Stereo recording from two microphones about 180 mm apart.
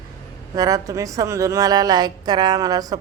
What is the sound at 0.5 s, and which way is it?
Speech, 20° right (ahead or behind).